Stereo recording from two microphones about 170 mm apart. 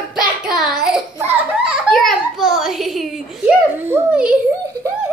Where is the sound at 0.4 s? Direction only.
5° right (ahead or behind).